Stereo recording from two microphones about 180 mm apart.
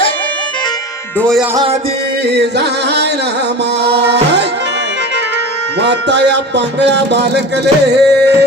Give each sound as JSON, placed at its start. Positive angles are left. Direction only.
{"t": 1.2, "sound": "music", "side_deg": 0}
{"t": 2.3, "sound": "speech", "side_deg": -70}
{"t": 3.8, "sound": "music", "side_deg": -70}
{"t": 5.8, "sound": "speech", "side_deg": -70}